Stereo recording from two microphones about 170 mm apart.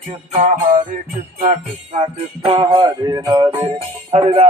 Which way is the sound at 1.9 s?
40° right (ahead or behind).